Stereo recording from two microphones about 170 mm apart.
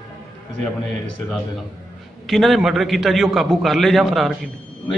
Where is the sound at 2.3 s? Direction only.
Centre (ahead or behind).